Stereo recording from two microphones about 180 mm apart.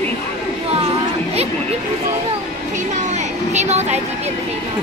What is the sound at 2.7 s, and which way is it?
Speech, 40° right (ahead or behind).